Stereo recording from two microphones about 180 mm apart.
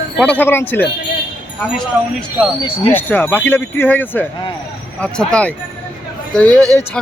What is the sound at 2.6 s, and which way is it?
Speech, 30° left (ahead or behind).